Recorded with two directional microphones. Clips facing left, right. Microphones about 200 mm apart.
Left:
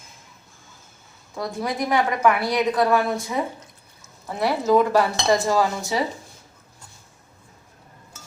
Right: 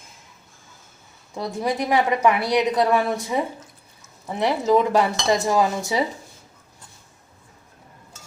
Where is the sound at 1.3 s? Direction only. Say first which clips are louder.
Right 2 dB; 20° right (ahead or behind).